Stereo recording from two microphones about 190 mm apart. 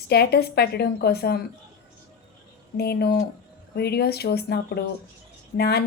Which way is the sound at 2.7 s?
55° left (ahead or behind).